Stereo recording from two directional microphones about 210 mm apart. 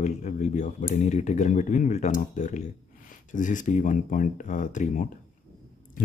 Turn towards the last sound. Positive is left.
turn(degrees=35)  # may be behind; listen again after turning